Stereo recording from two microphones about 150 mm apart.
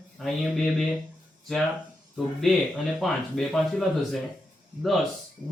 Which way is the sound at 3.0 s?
Centre (ahead or behind).